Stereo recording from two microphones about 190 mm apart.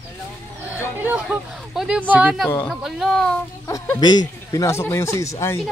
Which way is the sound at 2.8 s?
Centre (ahead or behind).